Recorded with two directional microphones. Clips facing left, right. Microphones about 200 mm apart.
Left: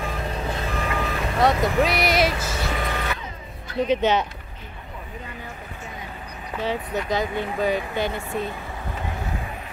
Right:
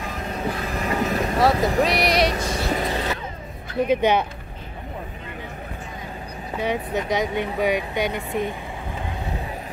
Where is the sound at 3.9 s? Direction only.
10° right (ahead or behind).